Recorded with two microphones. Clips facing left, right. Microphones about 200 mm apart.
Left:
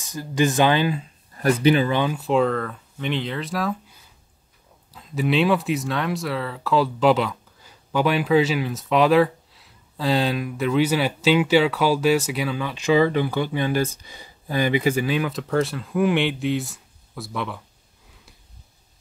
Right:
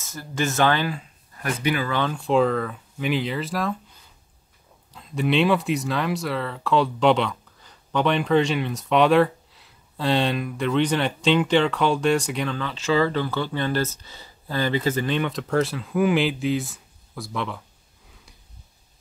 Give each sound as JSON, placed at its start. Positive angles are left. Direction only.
{"t": 0.0, "sound": "speech", "side_deg": 15}
{"t": 4.9, "sound": "speech", "side_deg": 0}